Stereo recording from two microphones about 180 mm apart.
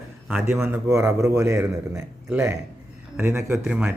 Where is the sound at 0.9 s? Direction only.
15° right (ahead or behind).